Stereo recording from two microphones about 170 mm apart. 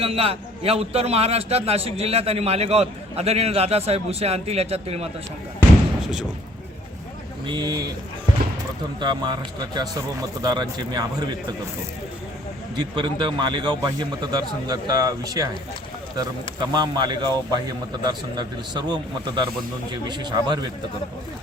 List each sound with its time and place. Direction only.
0.0 s a man's voice: 35° right (ahead or behind)
7.4 s a man's voice: 25° right (ahead or behind)
9.0 s a man's voice: 25° right (ahead or behind)
12.7 s a man's voice: 25° right (ahead or behind)
16.6 s a man's voice: 25° right (ahead or behind)